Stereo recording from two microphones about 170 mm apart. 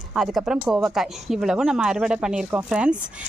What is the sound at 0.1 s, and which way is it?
Speech, centre (ahead or behind).